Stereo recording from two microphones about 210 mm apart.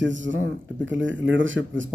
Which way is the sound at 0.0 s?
60° right (ahead or behind).